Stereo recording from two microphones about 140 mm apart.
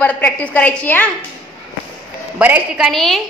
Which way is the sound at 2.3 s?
10° right (ahead or behind).